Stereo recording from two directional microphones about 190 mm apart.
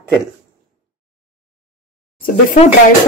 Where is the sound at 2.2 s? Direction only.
45° left (ahead or behind).